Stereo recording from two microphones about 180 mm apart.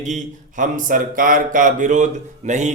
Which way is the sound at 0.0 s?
45° right (ahead or behind).